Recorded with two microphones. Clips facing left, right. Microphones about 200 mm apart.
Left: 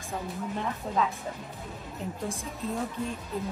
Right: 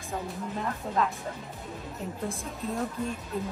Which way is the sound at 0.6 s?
Centre (ahead or behind).